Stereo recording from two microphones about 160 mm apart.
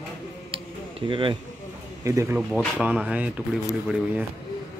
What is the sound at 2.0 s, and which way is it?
Speech, 20° right (ahead or behind).